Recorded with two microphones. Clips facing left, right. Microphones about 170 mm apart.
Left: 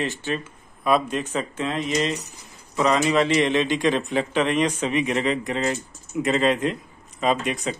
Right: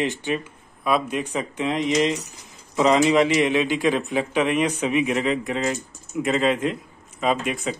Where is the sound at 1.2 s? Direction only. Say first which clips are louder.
Right 1 dB; 15° right (ahead or behind).